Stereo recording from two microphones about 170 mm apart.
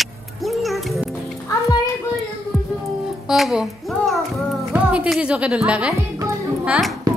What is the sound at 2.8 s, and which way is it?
Music, centre (ahead or behind).